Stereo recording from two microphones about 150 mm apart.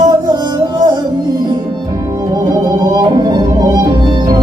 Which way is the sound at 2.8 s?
25° right (ahead or behind).